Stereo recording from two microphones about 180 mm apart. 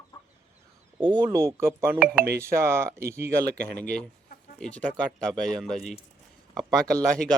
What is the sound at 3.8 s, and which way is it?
Speech, 5° left (ahead or behind).